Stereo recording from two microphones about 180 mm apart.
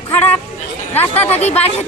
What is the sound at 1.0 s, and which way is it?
Speech, 35° left (ahead or behind).